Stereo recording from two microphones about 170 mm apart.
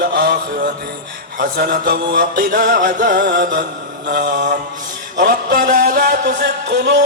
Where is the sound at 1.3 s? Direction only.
55° right (ahead or behind).